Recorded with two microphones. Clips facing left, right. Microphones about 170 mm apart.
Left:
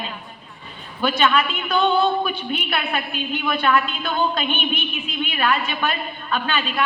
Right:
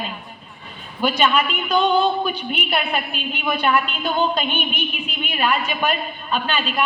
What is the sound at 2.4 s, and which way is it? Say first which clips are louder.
A woman's voice: right 1 dB; 15° right (ahead or behind).